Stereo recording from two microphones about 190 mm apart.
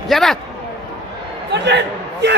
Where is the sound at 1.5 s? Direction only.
65° right (ahead or behind).